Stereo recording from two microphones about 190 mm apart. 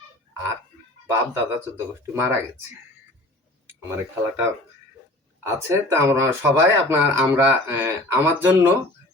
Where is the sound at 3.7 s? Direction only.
15° right (ahead or behind).